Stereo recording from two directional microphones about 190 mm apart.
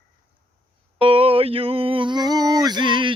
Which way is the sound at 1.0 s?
30° right (ahead or behind).